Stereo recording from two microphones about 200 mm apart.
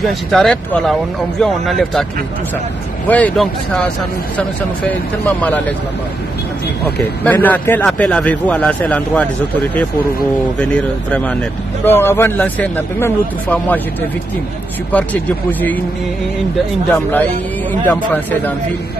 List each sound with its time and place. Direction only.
0.0 s speech: centre (ahead or behind)
3.1 s speech: 5° left (ahead or behind)
5.4 s speech: 10° left (ahead or behind)
7.2 s speech: 10° left (ahead or behind)
10.6 s speech: 5° left (ahead or behind)
16.9 s speech: 10° left (ahead or behind)